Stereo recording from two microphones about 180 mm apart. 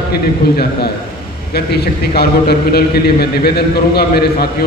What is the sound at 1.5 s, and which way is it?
A man's voice, 60° left (ahead or behind).